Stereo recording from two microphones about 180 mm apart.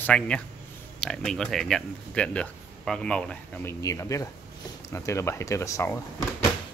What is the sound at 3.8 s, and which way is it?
Speech, 20° left (ahead or behind).